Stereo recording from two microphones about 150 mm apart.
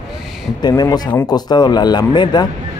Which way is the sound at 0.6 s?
25° left (ahead or behind).